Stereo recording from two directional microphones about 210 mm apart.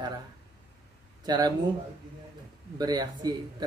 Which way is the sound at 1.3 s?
20° right (ahead or behind).